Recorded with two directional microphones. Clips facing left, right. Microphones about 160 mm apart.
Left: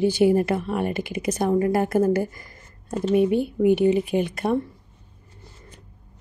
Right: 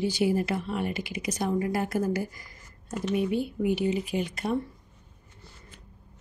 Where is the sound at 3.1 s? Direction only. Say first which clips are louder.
Left 8 dB; 50° left (ahead or behind).